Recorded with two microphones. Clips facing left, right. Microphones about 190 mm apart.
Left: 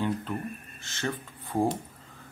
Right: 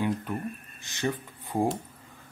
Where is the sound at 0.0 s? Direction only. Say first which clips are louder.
Right 1 dB; 15° right (ahead or behind).